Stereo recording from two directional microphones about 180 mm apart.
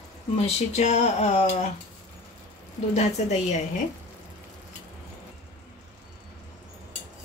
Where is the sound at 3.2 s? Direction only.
40° left (ahead or behind).